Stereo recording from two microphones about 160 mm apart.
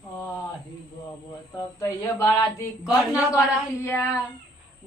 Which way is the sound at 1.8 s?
20° left (ahead or behind).